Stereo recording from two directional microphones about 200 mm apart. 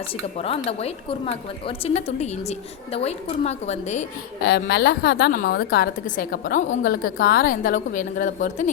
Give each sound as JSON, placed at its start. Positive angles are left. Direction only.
{"t": 0.3, "sound": "a woman's voice", "side_deg": 30}
{"t": 4.4, "sound": "a woman's voice", "side_deg": 55}